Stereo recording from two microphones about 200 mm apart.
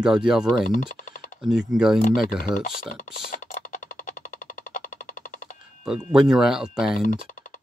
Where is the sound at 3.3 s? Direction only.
40° left (ahead or behind).